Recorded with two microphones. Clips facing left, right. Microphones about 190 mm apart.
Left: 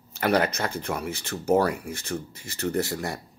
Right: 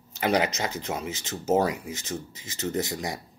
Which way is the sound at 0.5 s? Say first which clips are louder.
Left 1 dB; 60° left (ahead or behind).